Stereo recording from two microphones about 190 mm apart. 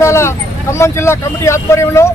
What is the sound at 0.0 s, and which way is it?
Speech, 15° left (ahead or behind).